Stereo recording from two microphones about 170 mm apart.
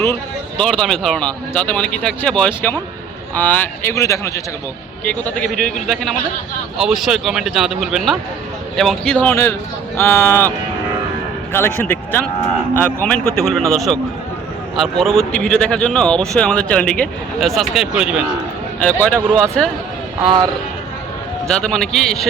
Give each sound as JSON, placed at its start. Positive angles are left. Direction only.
{"t": 0.6, "sound": "a man's voice", "side_deg": 5}
{"t": 11.5, "sound": "a man's voice", "side_deg": 15}
{"t": 18.8, "sound": "a man's voice", "side_deg": 10}
{"t": 20.2, "sound": "a man's voice", "side_deg": -25}
{"t": 21.4, "sound": "a man's voice", "side_deg": 5}